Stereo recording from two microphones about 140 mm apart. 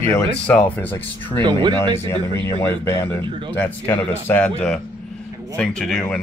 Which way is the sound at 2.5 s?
15° left (ahead or behind).